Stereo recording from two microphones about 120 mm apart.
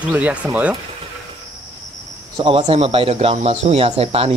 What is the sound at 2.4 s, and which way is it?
Speech, 50° right (ahead or behind).